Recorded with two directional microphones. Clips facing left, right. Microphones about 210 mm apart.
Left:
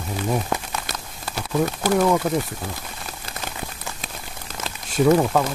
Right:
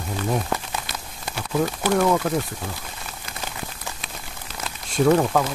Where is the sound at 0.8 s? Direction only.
40° left (ahead or behind).